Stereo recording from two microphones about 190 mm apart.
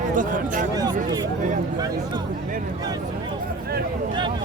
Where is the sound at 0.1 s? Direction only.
45° right (ahead or behind).